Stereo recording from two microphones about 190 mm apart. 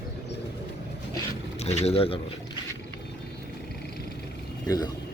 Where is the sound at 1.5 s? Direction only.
35° left (ahead or behind).